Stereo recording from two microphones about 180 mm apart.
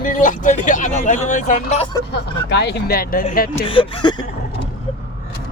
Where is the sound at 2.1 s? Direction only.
70° left (ahead or behind); by 3.5 s 55° left (ahead or behind).